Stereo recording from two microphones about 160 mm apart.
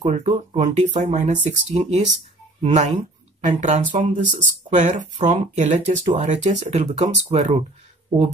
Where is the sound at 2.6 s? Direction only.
50° right (ahead or behind).